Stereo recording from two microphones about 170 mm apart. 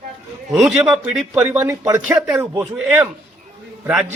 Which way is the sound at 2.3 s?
5° right (ahead or behind).